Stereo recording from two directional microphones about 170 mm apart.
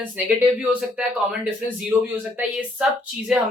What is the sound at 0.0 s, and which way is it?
A woman's voice, 10° right (ahead or behind).